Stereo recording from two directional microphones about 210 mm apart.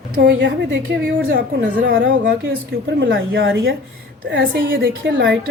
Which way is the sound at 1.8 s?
60° right (ahead or behind).